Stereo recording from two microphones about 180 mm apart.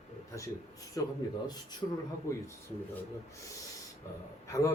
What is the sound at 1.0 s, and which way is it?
Speech, 20° left (ahead or behind).